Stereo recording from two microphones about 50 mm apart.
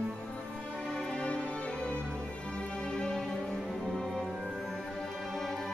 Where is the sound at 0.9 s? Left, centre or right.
Centre.